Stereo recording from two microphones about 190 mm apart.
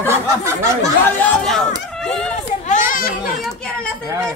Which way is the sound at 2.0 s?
5° left (ahead or behind).